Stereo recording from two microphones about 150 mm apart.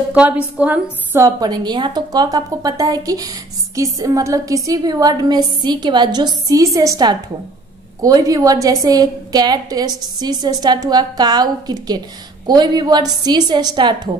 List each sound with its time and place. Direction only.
0.1 s a woman's voice: 10° right (ahead or behind)
1.4 s a woman's voice: 30° right (ahead or behind)